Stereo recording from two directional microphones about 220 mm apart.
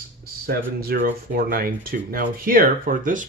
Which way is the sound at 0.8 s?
40° right (ahead or behind).